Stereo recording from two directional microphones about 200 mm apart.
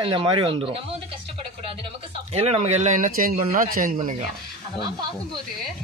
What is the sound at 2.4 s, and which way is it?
Speech, 30° right (ahead or behind).